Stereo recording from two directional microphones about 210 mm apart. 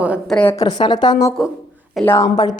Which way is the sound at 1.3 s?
Centre (ahead or behind).